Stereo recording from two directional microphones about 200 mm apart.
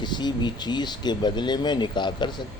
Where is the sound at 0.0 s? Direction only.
20° left (ahead or behind).